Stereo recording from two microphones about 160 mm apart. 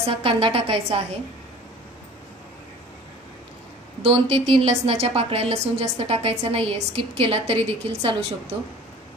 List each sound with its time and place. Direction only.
0.0 s a woman's voice: 35° right (ahead or behind)
4.0 s a woman's voice: 35° right (ahead or behind)